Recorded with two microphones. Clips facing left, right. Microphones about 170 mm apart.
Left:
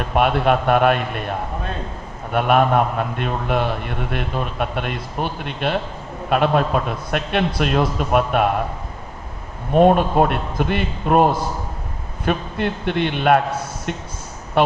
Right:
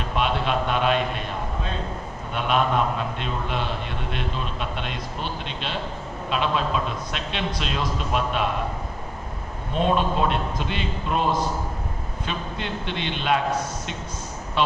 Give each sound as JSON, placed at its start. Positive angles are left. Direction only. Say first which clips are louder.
{"t": 0.0, "sound": "a man's voice", "louder": "left 7 dB", "side_deg": 55}
{"t": 9.7, "sound": "a man's voice", "louder": "left 9 dB", "side_deg": 55}